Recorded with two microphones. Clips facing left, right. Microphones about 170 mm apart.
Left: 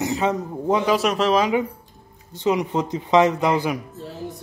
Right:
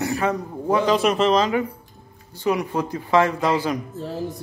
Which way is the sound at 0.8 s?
Centre (ahead or behind).